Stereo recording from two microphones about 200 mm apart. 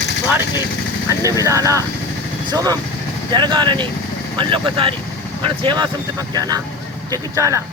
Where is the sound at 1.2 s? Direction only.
15° right (ahead or behind).